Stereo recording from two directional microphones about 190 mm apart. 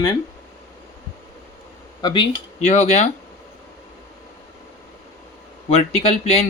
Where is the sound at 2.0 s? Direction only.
20° left (ahead or behind).